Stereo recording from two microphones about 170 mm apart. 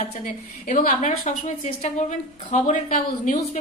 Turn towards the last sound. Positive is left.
turn(degrees=45)  # may be behind; listen again after turning